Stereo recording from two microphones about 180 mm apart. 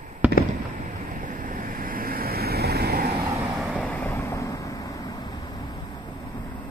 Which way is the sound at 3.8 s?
10° left (ahead or behind).